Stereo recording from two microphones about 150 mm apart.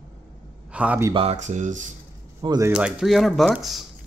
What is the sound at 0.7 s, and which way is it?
Speech, 10° right (ahead or behind).